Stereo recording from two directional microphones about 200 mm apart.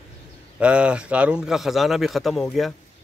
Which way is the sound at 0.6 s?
5° right (ahead or behind).